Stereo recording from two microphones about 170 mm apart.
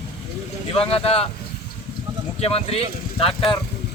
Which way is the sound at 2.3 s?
35° left (ahead or behind).